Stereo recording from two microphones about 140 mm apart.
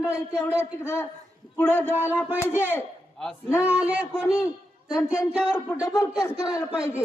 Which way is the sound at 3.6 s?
10° right (ahead or behind).